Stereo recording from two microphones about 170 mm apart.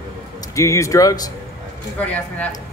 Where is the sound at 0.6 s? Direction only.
15° left (ahead or behind).